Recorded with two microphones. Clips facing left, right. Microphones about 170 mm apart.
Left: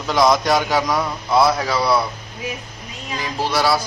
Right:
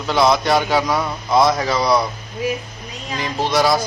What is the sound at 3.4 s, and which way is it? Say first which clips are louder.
Speech: right 2 dB; 5° left (ahead or behind).